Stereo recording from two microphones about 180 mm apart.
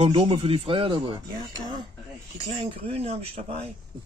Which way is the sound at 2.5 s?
35° right (ahead or behind).